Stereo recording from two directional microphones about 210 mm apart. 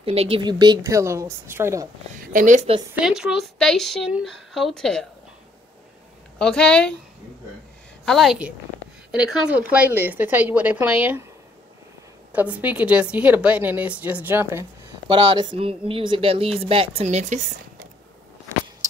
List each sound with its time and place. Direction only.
0.0 s a woman's voice: 30° right (ahead or behind); by 1.9 s 10° right (ahead or behind)
2.1 s a woman's voice: 40° right (ahead or behind)
2.9 s a woman's voice: 5° right (ahead or behind)
6.3 s a woman's voice: 5° left (ahead or behind)
8.0 s a woman's voice: centre (ahead or behind)
12.3 s a woman's voice: 5° right (ahead or behind)
15.0 s speech: 25° right (ahead or behind)